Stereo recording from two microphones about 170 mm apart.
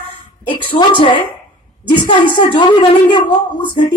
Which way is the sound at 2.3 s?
25° left (ahead or behind).